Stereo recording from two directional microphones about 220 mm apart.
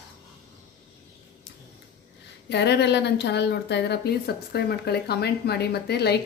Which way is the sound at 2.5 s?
50° left (ahead or behind).